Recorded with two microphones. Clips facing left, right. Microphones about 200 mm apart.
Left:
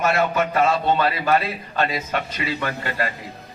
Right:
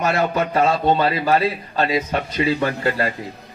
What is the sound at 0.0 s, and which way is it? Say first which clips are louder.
A man's voice: right 1 dB; 30° right (ahead or behind).